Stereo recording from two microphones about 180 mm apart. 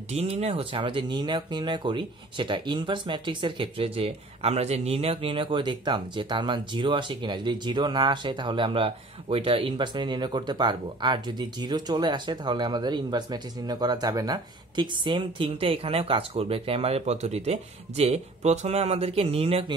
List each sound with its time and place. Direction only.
0.1 s speech: 35° right (ahead or behind)